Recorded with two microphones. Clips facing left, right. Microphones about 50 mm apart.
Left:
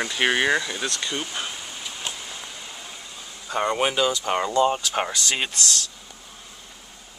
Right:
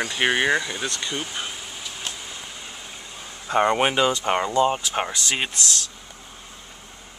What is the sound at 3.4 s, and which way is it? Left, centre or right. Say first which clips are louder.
Speech: right 3 dB; right.